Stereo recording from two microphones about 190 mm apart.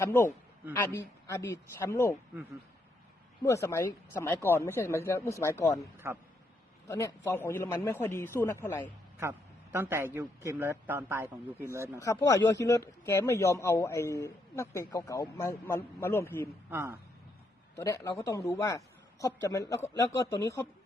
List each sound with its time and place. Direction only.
0.0 s a man's voice: 10° left (ahead or behind)
3.4 s a man's voice: 15° left (ahead or behind)
9.7 s a man's voice: 10° right (ahead or behind)
11.9 s a man's voice: 15° left (ahead or behind)
16.6 s a man's voice: 10° right (ahead or behind)
17.7 s a man's voice: 15° left (ahead or behind)